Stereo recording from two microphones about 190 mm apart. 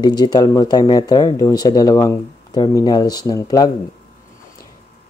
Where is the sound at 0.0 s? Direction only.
20° left (ahead or behind).